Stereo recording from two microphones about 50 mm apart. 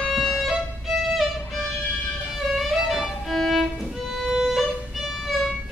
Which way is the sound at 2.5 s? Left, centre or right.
Centre.